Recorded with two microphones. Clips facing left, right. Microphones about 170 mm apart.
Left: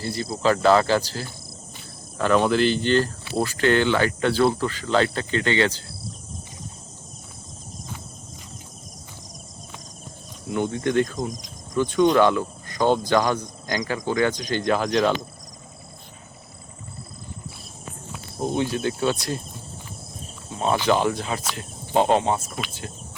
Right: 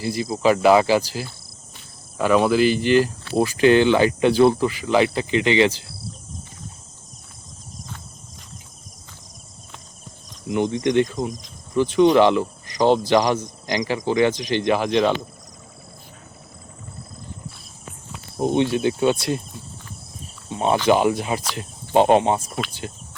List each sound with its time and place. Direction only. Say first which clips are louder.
0.0 s speech: right 3 dB; 15° right (ahead or behind)
10.5 s speech: right 3 dB; 15° right (ahead or behind)
11.0 s speech: right 2 dB; centre (ahead or behind)
12.2 s speech: right 3 dB; 25° right (ahead or behind)
14.7 s speech: right 2 dB; 5° right (ahead or behind)
18.3 s speech: right 5 dB; 20° right (ahead or behind)
20.6 s speech: right 3 dB; 20° right (ahead or behind)